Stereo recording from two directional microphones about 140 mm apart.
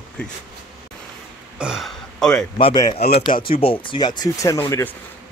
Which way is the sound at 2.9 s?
45° left (ahead or behind).